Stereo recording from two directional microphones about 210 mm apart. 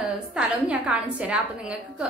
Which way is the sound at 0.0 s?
5° right (ahead or behind).